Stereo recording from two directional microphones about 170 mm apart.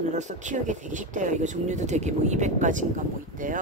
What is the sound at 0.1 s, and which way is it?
Speech, 45° right (ahead or behind).